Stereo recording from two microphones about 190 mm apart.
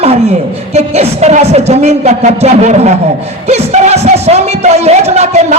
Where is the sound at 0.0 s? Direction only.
35° right (ahead or behind).